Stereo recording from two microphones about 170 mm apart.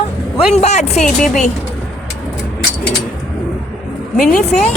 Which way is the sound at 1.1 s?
Centre (ahead or behind).